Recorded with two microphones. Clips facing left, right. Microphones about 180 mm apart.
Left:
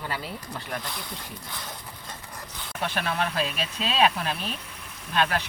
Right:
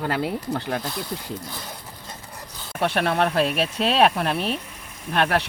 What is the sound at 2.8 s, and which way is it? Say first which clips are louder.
Speech: right 7 dB; 65° right (ahead or behind).